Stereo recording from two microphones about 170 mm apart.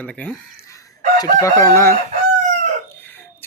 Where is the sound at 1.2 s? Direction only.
20° left (ahead or behind).